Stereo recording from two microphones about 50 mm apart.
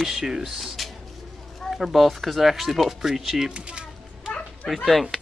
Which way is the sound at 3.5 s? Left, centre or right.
Centre.